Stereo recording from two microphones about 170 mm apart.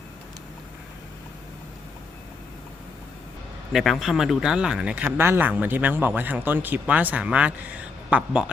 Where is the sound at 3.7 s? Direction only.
Centre (ahead or behind).